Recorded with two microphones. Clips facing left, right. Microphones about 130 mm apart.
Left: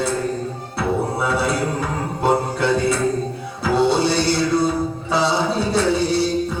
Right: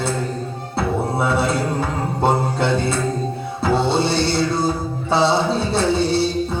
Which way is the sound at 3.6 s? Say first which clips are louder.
Left 1 dB; 25° right (ahead or behind).